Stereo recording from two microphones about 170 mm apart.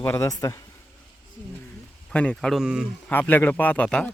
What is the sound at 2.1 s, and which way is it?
Speech, 5° left (ahead or behind).